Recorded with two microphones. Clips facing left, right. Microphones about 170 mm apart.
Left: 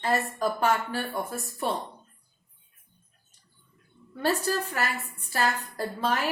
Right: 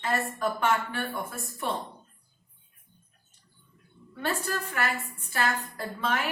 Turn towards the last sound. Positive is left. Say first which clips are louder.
# left 3 dB
turn(degrees=35)  # may be behind; listen again after turning